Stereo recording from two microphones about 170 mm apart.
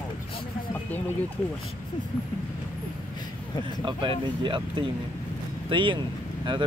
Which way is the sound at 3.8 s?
30° right (ahead or behind).